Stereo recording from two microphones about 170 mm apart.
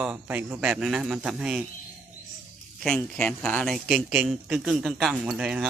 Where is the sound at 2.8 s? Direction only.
5° left (ahead or behind).